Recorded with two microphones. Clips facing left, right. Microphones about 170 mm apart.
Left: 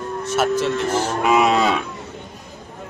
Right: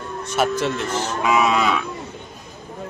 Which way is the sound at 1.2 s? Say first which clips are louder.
Left 2 dB; 40° left (ahead or behind).